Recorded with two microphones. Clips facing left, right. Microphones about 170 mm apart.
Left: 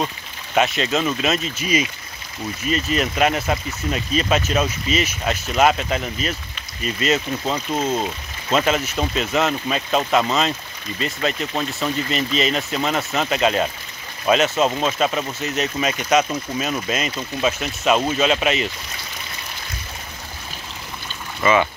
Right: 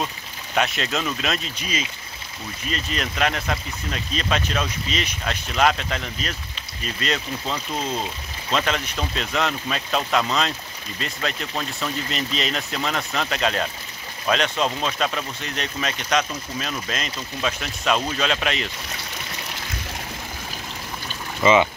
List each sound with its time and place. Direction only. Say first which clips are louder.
0.6 s speech: left 5 dB; centre (ahead or behind)
21.4 s speech: right 1 dB; 15° right (ahead or behind)